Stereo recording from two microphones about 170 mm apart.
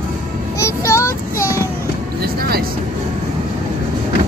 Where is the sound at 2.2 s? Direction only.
65° right (ahead or behind).